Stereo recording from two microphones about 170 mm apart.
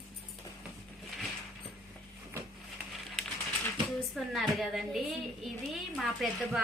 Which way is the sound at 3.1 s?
5° left (ahead or behind).